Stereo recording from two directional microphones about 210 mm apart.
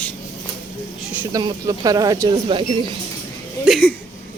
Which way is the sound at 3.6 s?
5° left (ahead or behind).